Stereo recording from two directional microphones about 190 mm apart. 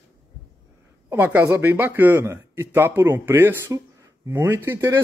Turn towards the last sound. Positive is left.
turn(degrees=-15)  # may be behind; listen again after turning